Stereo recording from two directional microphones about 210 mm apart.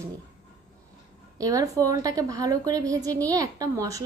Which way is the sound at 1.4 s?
15° right (ahead or behind).